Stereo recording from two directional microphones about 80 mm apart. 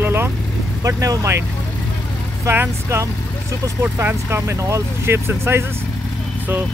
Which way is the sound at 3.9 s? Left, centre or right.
Right.